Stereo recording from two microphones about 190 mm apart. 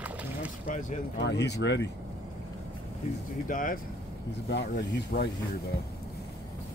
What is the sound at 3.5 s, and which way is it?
Speech, 45° left (ahead or behind).